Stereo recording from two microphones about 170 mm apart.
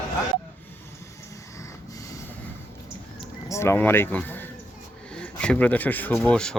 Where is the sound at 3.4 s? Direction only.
15° left (ahead or behind).